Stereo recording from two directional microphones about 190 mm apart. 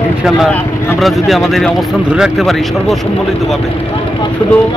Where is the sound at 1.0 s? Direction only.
Centre (ahead or behind).